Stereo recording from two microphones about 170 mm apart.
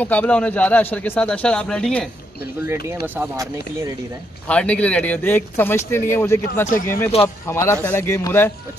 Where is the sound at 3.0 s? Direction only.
10° right (ahead or behind).